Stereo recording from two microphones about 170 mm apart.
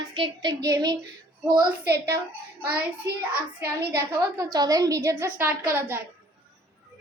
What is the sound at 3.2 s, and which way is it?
A child's voice, 10° right (ahead or behind).